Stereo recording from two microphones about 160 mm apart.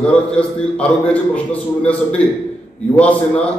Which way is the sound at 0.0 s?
5° left (ahead or behind).